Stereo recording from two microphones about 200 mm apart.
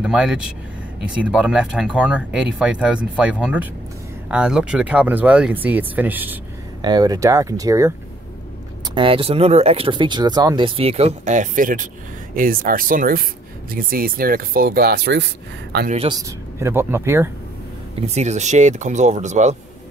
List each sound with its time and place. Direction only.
0.0 s speech: 5° right (ahead or behind)
6.8 s speech: 20° right (ahead or behind); by 15.9 s 55° right (ahead or behind)
15.9 s speech: 30° right (ahead or behind)
16.2 s speech: 15° right (ahead or behind)
18.0 s speech: 35° right (ahead or behind)